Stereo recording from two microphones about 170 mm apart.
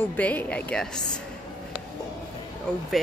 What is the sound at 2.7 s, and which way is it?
Speech, 5° left (ahead or behind).